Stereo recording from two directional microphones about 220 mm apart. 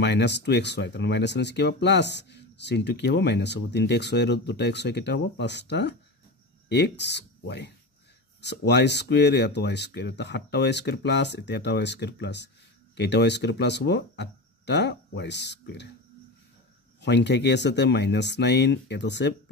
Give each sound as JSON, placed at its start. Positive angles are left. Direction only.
{"t": 0.0, "sound": "speech", "side_deg": 50}
{"t": 17.0, "sound": "speech", "side_deg": 50}